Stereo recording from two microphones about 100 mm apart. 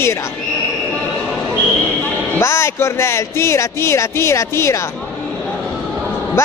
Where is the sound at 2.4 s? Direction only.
25° left (ahead or behind).